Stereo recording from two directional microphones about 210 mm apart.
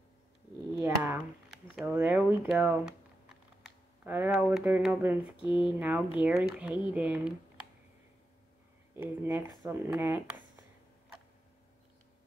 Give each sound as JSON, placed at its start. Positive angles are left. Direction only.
{"t": 0.7, "sound": "a sound", "side_deg": -10}
{"t": 3.6, "sound": "speech", "side_deg": -10}
{"t": 5.4, "sound": "speech", "side_deg": 25}
{"t": 5.8, "sound": "speech", "side_deg": -5}
{"t": 8.9, "sound": "speech", "side_deg": -10}